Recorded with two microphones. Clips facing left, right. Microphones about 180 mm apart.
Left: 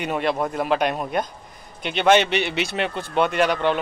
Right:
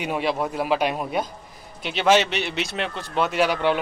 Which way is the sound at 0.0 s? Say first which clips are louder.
Left 1 dB; 5° right (ahead or behind).